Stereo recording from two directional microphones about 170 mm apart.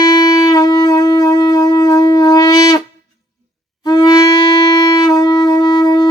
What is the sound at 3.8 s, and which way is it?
Wind instrument, 25° left (ahead or behind).